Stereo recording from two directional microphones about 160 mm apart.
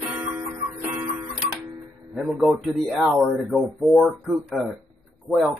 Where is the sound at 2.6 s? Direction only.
Centre (ahead or behind).